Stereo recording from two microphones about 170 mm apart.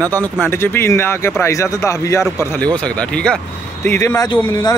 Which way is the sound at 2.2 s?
5° left (ahead or behind).